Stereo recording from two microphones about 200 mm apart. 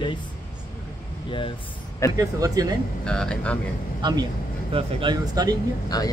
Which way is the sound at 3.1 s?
5° left (ahead or behind).